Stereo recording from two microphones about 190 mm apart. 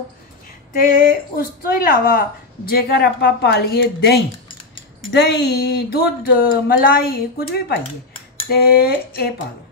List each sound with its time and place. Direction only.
0.7 s a woman's voice: 50° left (ahead or behind)
2.7 s speech: 55° left (ahead or behind)